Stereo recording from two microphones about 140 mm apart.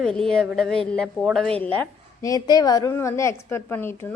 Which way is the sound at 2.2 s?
30° left (ahead or behind).